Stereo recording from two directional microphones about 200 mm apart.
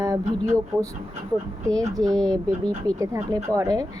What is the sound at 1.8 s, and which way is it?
A woman's voice, 20° right (ahead or behind).